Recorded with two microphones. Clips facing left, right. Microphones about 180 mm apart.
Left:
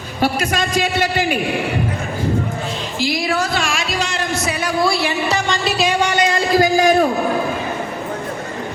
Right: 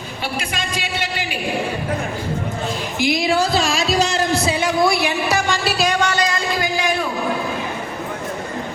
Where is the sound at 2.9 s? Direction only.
20° right (ahead or behind); by 5.9 s centre (ahead or behind).